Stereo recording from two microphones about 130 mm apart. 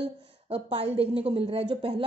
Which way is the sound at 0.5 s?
50° right (ahead or behind).